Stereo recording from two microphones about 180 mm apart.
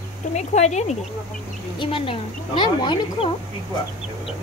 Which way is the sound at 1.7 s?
30° left (ahead or behind).